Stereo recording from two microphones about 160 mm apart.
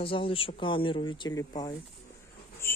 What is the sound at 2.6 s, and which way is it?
Bird, 15° left (ahead or behind).